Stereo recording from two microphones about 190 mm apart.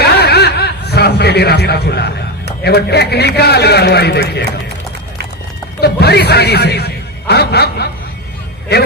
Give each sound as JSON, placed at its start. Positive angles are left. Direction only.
{"t": 0.0, "sound": "a sound", "side_deg": 60}
{"t": 2.6, "sound": "a man's voice", "side_deg": 60}
{"t": 5.8, "sound": "a man's voice", "side_deg": 60}